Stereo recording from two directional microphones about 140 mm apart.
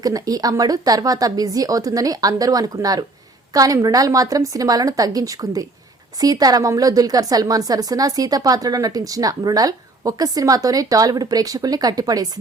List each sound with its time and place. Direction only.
0.0 s a woman's voice: 25° right (ahead or behind)